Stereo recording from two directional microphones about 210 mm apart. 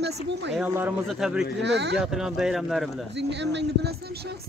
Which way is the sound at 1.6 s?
55° right (ahead or behind).